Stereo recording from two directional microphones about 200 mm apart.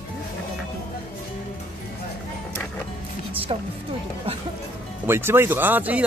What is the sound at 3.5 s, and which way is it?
Speech, 25° right (ahead or behind).